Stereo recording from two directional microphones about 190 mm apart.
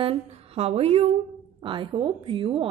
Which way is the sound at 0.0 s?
30° right (ahead or behind).